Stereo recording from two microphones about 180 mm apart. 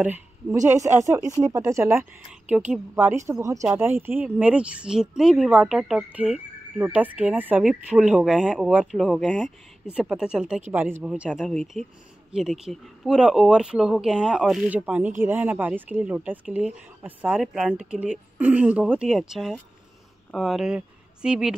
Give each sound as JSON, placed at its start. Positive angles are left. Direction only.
{"t": 0.0, "sound": "a woman's voice", "side_deg": -10}